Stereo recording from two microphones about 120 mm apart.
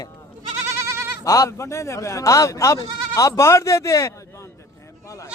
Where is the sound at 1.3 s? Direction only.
25° left (ahead or behind).